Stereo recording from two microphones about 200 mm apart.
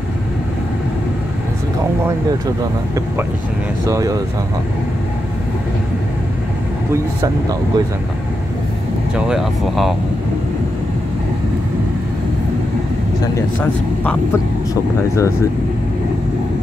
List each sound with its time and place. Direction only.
3.8 s speech: 15° right (ahead or behind)
6.9 s speech: 15° right (ahead or behind)
9.1 s speech: centre (ahead or behind)
13.6 s speech: 10° left (ahead or behind)